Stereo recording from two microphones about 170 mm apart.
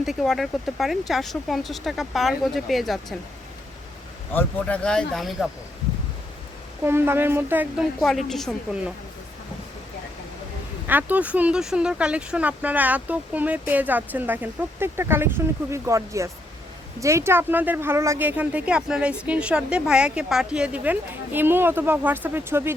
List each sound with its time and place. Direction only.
0.0 s speech: centre (ahead or behind)
4.3 s speech: 10° left (ahead or behind)
6.8 s speech: 15° right (ahead or behind)
8.0 s speech: centre (ahead or behind)
10.8 s speech: 10° right (ahead or behind)